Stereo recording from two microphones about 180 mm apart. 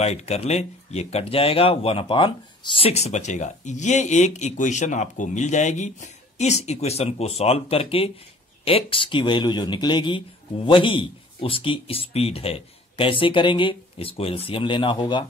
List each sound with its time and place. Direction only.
0.0 s speech: 35° left (ahead or behind)